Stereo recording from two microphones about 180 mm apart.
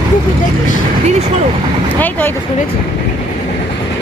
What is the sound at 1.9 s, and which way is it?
Speech, 10° left (ahead or behind).